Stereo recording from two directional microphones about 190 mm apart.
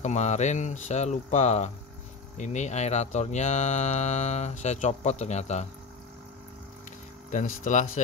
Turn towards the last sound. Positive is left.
turn(degrees=40)  # may be behind; listen again after turning